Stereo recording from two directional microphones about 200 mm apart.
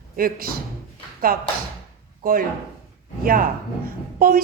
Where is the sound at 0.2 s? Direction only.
45° right (ahead or behind).